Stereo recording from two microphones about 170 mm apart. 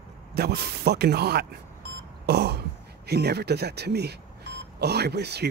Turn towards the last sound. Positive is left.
turn(degrees=-75)  # may be behind; listen again after turning